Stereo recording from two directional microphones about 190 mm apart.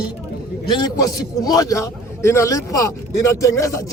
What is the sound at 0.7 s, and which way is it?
A man's voice, 20° left (ahead or behind).